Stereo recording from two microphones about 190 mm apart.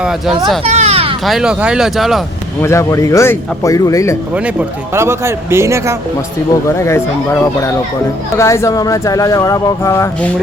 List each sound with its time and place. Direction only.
0.0 s speech: centre (ahead or behind)
0.6 s a sound: 35° right (ahead or behind)
1.2 s speech: centre (ahead or behind)
2.6 s speech: 15° left (ahead or behind)
4.9 s a man's voice: 15° right (ahead or behind)
6.7 s speech: 15° left (ahead or behind)